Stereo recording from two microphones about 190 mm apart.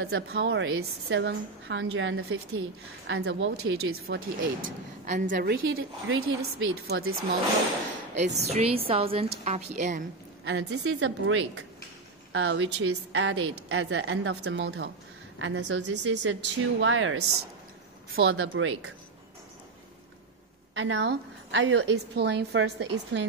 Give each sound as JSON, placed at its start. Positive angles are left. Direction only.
{"t": 0.0, "sound": "a woman's voice", "side_deg": -80}
{"t": 5.0, "sound": "a woman's voice", "side_deg": -40}
{"t": 5.7, "sound": "a woman's voice", "side_deg": -90}
{"t": 8.4, "sound": "a woman's voice", "side_deg": -35}
{"t": 10.4, "sound": "a woman's voice", "side_deg": -75}
{"t": 15.3, "sound": "a woman's voice", "side_deg": -85}
{"t": 20.7, "sound": "a woman's voice", "side_deg": -75}